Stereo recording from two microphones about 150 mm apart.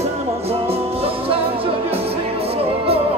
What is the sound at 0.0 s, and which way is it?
Music, 40° right (ahead or behind).